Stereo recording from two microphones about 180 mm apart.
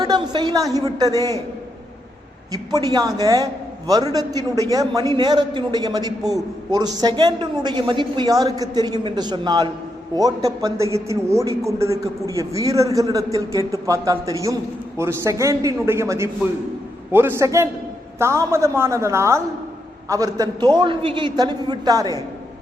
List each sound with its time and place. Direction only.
0.0 s a man's voice: 25° right (ahead or behind)
2.5 s a man's voice: 20° right (ahead or behind)